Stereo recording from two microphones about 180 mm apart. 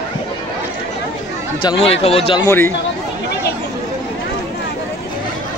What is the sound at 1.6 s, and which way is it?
Speech, 35° left (ahead or behind).